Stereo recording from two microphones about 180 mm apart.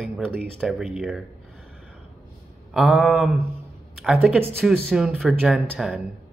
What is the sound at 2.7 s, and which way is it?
Speech, centre (ahead or behind).